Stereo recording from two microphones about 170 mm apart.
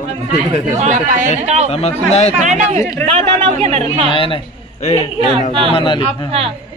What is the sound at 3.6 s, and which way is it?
Speech, 35° right (ahead or behind).